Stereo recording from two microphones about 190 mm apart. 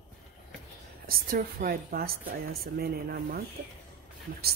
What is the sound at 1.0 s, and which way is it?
Speech, 50° right (ahead or behind).